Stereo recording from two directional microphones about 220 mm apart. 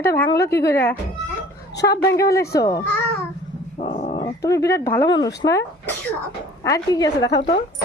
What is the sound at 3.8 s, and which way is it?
Dog, 25° left (ahead or behind).